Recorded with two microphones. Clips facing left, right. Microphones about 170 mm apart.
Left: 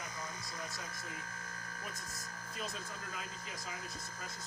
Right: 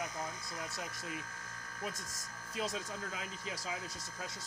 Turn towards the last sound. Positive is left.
turn(degrees=-90)